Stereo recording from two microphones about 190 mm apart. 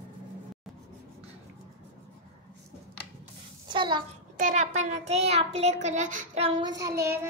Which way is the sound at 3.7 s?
25° right (ahead or behind).